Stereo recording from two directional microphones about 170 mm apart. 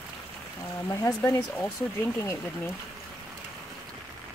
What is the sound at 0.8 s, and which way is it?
Speech, 20° left (ahead or behind).